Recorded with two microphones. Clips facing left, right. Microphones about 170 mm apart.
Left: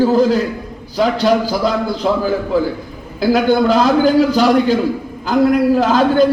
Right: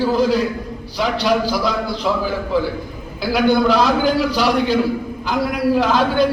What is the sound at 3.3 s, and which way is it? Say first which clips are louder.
A man's voice: left 2 dB; 45° left (ahead or behind).